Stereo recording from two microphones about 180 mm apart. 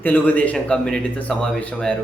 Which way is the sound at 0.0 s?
10° left (ahead or behind).